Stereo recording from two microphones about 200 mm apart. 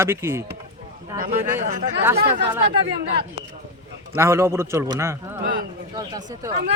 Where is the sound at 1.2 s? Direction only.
40° right (ahead or behind).